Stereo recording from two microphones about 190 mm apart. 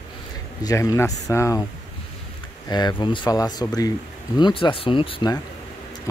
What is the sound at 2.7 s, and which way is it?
Speech, 20° left (ahead or behind).